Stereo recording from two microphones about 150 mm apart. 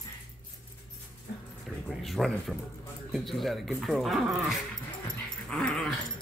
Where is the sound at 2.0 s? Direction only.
Centre (ahead or behind).